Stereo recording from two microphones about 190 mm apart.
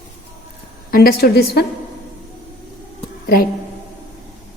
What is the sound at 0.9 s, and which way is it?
Speech, 55° left (ahead or behind).